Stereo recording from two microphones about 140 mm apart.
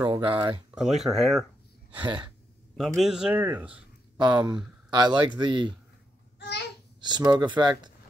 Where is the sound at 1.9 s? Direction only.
35° right (ahead or behind).